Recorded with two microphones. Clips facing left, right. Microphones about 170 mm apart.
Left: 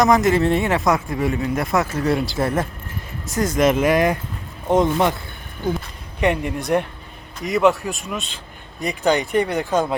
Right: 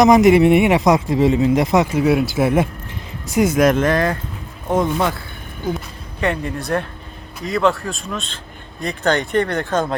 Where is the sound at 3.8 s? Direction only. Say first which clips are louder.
Even; 15° left (ahead or behind).